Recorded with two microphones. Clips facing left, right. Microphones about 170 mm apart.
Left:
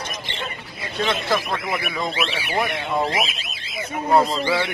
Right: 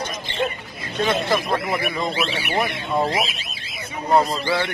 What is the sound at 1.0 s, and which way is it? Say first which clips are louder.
Speech: right 2 dB; centre (ahead or behind).